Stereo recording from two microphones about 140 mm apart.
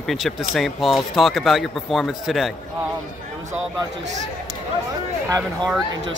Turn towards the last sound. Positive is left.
turn(degrees=5)  # may be behind; listen again after turning